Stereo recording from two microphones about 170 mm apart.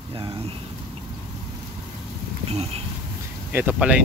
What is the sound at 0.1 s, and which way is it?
Speech, 35° right (ahead or behind).